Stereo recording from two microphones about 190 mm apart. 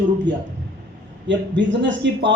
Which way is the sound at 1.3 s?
75° right (ahead or behind).